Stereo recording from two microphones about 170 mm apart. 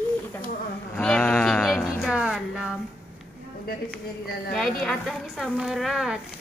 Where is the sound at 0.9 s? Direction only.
5° left (ahead or behind).